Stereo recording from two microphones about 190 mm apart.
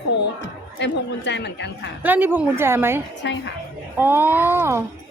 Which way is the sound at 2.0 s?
10° right (ahead or behind).